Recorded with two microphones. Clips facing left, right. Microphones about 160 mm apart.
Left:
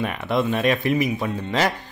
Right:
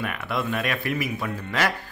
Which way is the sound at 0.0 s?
25° left (ahead or behind).